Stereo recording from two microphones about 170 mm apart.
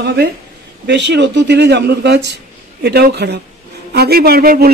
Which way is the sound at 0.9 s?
90° right.